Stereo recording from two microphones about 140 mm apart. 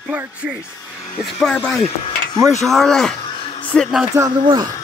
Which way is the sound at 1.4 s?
10° left (ahead or behind).